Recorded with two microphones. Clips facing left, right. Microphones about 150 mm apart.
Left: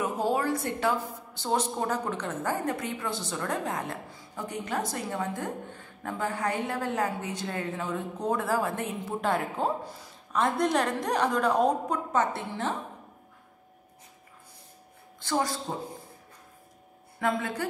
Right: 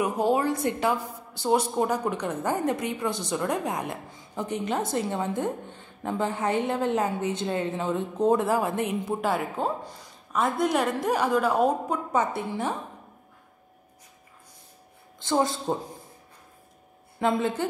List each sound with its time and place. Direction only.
0.0 s a woman's voice: 20° right (ahead or behind)
15.1 s speech: 25° right (ahead or behind)
17.2 s a woman's voice: 25° right (ahead or behind)